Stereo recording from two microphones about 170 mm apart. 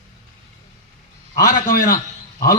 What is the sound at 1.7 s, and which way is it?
Speech, 55° left (ahead or behind).